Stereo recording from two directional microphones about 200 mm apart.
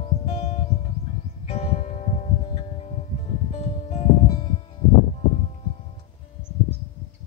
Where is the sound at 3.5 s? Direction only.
35° left (ahead or behind).